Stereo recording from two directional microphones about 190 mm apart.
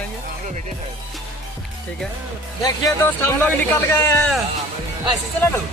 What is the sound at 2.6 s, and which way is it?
Speech, 15° left (ahead or behind).